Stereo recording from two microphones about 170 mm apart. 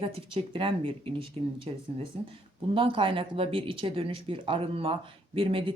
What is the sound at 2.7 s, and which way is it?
Speech, 30° right (ahead or behind).